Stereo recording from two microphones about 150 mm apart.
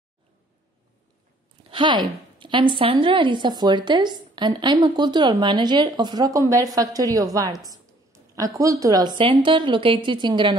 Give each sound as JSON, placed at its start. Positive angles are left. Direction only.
{"t": 1.7, "sound": "a woman's voice", "side_deg": -30}
{"t": 7.6, "sound": "a sound", "side_deg": -25}
{"t": 8.5, "sound": "a woman's voice", "side_deg": -25}